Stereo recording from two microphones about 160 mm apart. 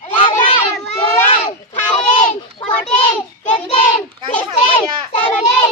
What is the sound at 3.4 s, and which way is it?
Child singing, 50° left (ahead or behind).